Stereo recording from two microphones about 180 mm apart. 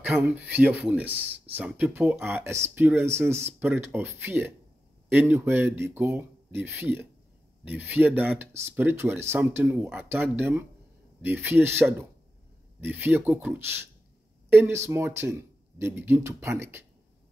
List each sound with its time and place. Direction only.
0.1 s speech: 10° right (ahead or behind)